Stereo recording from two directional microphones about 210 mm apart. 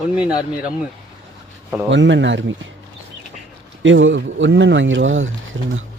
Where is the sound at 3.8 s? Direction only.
65° right (ahead or behind).